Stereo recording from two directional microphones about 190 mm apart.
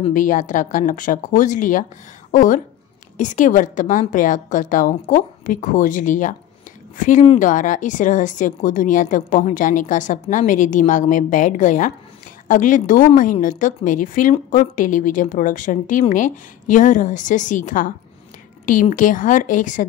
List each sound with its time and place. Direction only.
0.0 s a woman's voice: 45° left (ahead or behind)